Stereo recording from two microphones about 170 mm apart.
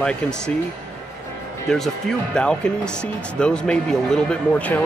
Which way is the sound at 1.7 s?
5° left (ahead or behind).